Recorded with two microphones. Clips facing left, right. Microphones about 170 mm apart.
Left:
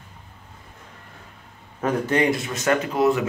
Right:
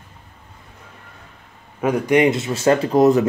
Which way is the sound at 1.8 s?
15° right (ahead or behind).